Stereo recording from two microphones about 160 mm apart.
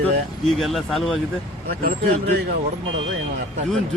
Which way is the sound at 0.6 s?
Centre (ahead or behind).